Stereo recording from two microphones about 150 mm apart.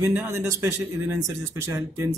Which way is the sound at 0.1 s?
15° right (ahead or behind).